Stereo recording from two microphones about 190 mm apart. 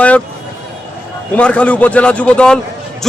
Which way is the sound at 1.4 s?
5° left (ahead or behind).